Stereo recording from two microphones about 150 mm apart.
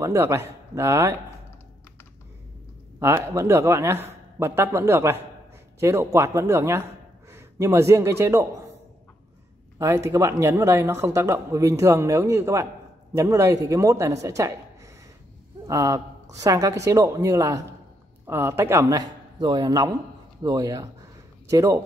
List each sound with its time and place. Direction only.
0.0 s a man's voice: 20° right (ahead or behind)
3.0 s a man's voice: 20° right (ahead or behind)
9.8 s speech: 20° right (ahead or behind)
15.6 s speech: 20° right (ahead or behind)